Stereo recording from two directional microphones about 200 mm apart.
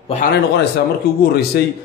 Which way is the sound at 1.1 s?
50° left (ahead or behind).